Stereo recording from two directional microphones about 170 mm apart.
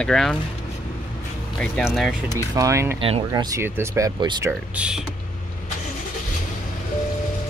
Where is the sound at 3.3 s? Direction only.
20° right (ahead or behind).